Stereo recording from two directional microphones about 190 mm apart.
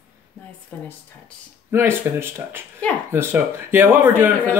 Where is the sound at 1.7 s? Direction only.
15° right (ahead or behind).